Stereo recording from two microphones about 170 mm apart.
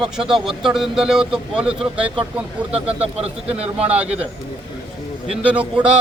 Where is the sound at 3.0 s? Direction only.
35° right (ahead or behind).